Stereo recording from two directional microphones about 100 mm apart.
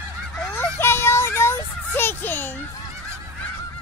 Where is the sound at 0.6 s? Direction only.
25° left (ahead or behind).